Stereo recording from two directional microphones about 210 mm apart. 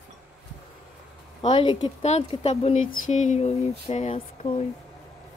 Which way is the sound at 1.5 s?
20° left (ahead or behind).